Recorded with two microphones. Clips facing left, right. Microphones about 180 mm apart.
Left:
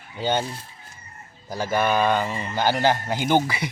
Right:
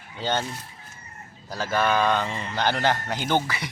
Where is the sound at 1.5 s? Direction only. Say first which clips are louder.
Left 1 dB; 15° left (ahead or behind).